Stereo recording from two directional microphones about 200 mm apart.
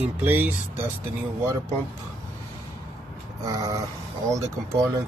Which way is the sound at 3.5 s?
20° right (ahead or behind).